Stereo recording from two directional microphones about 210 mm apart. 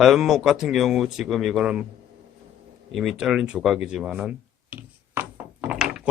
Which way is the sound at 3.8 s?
5° right (ahead or behind).